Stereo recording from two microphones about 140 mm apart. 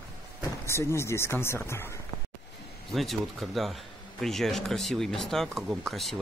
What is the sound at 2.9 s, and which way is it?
A man's voice, centre (ahead or behind).